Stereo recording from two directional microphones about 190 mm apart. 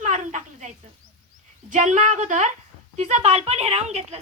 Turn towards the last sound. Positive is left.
turn(degrees=-35)  # may be behind; listen again after turning